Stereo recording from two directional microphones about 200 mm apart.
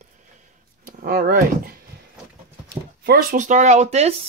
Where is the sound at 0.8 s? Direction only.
45° right (ahead or behind).